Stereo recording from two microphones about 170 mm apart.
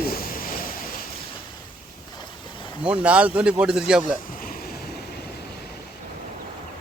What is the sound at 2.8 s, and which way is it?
Speech, 5° right (ahead or behind).